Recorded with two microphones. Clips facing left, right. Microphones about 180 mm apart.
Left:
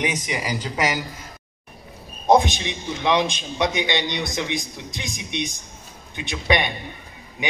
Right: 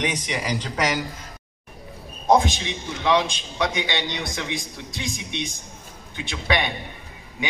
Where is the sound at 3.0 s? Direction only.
20° left (ahead or behind).